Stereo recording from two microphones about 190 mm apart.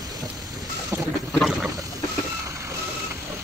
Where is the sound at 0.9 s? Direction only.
10° right (ahead or behind).